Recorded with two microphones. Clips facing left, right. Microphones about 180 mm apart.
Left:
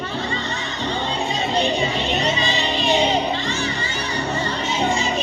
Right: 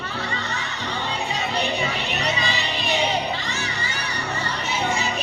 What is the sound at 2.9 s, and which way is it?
Music, 30° left (ahead or behind).